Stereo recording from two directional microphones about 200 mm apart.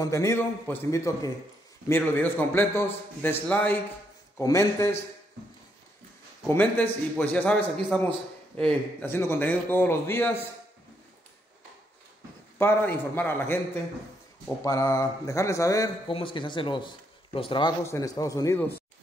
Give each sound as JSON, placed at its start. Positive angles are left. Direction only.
{"t": 0.0, "sound": "a man's voice", "side_deg": 15}
{"t": 6.4, "sound": "a man's voice", "side_deg": 10}
{"t": 12.5, "sound": "a man's voice", "side_deg": 10}
{"t": 14.6, "sound": "a man's voice", "side_deg": 15}